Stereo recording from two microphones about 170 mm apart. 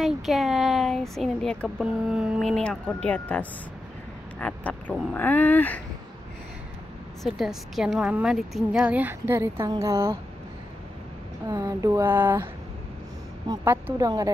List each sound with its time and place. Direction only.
0.0 s speech: centre (ahead or behind)
7.2 s a woman's voice: centre (ahead or behind)
11.4 s a woman's voice: 25° right (ahead or behind)
13.5 s speech: 15° right (ahead or behind)